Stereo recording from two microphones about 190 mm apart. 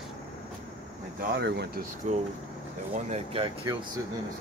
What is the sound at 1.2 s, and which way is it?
Speech, 60° right (ahead or behind).